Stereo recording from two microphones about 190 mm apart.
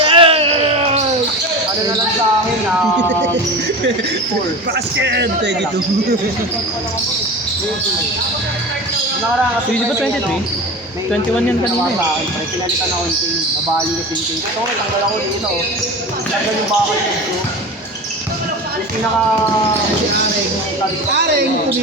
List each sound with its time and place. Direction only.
0.0 s a sound: 30° right (ahead or behind)
4.9 s a man's voice: 65° right (ahead or behind)
21.1 s a man's voice: 60° right (ahead or behind)